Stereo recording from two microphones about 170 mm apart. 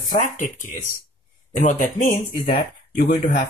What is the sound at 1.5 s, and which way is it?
Speech, 45° left (ahead or behind).